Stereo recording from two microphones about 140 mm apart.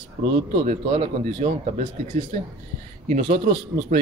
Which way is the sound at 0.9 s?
40° right (ahead or behind).